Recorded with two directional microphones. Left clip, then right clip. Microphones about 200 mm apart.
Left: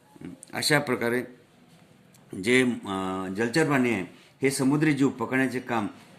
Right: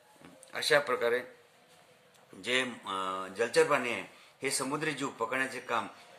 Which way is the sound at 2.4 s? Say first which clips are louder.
Left 8 dB; 50° left (ahead or behind).